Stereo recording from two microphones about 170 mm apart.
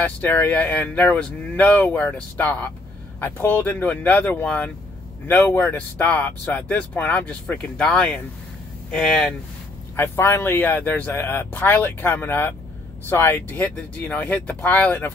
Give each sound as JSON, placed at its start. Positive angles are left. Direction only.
{"t": 0.0, "sound": "speech", "side_deg": 10}
{"t": 9.9, "sound": "speech", "side_deg": 15}